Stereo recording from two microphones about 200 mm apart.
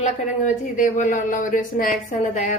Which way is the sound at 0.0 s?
40° left (ahead or behind).